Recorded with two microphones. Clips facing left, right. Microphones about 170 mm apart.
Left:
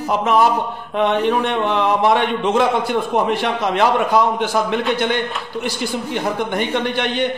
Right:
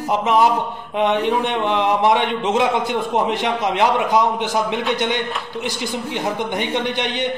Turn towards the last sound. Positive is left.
turn(degrees=-15)  # may be behind; listen again after turning